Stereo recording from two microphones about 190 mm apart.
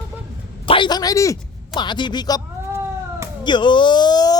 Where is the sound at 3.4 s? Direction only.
25° left (ahead or behind).